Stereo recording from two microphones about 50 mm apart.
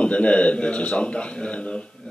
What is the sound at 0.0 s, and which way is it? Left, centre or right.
A man's voice, left.